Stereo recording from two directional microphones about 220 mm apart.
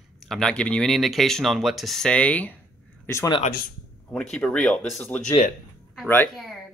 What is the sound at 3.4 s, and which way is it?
Speech, 45° left (ahead or behind).